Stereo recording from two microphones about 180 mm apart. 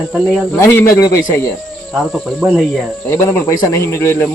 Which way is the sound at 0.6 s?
15° left (ahead or behind).